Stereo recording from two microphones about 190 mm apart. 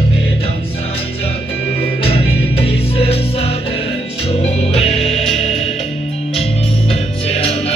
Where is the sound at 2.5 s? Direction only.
30° left (ahead or behind).